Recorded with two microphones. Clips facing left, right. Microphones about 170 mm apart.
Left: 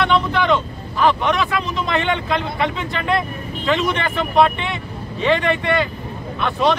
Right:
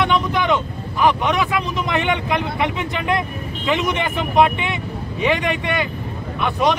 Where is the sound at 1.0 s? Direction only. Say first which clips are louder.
Even; 20° right (ahead or behind).